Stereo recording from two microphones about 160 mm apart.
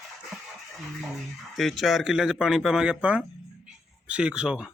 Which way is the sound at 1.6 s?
Centre (ahead or behind).